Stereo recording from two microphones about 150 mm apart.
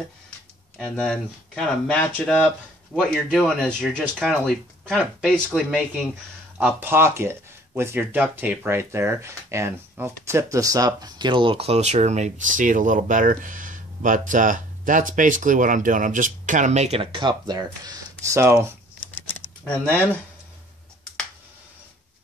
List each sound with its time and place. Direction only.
0.7 s speech: 5° left (ahead or behind)
6.6 s speech: 15° right (ahead or behind)
19.2 s a sound: 10° left (ahead or behind)